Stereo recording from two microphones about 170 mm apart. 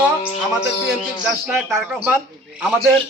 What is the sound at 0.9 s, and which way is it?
A man's voice, 5° right (ahead or behind).